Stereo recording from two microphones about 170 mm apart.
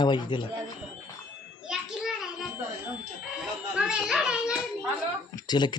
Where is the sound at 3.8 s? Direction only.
5° right (ahead or behind).